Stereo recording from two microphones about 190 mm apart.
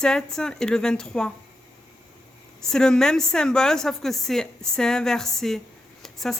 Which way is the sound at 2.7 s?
5° left (ahead or behind).